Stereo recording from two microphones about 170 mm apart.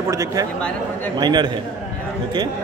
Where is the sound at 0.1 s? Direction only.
20° right (ahead or behind).